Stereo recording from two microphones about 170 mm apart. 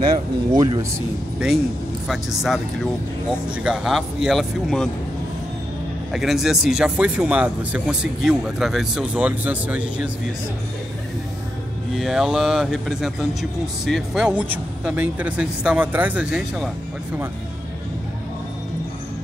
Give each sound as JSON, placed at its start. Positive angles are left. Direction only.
{"t": 0.0, "sound": "speech", "side_deg": -25}
{"t": 2.0, "sound": "speech", "side_deg": 0}
{"t": 3.6, "sound": "speech", "side_deg": -5}
{"t": 6.1, "sound": "speech", "side_deg": 0}
{"t": 11.9, "sound": "speech", "side_deg": 0}